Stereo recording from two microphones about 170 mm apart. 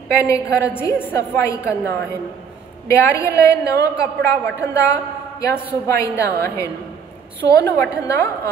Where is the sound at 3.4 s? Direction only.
20° left (ahead or behind).